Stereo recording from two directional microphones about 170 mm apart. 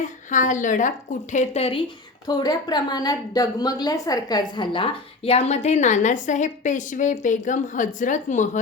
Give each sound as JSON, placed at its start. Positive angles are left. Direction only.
{"t": 0.3, "sound": "a woman's voice", "side_deg": 45}
{"t": 2.2, "sound": "a woman's voice", "side_deg": 25}